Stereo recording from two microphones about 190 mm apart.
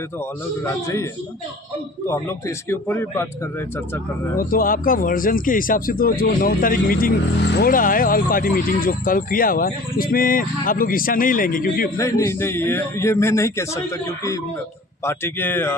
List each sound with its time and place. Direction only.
0.6 s a man's voice: 15° left (ahead or behind)
2.0 s a man's voice: 15° left (ahead or behind)
4.4 s speech: 50° left (ahead or behind)
11.9 s a man's voice: 15° left (ahead or behind)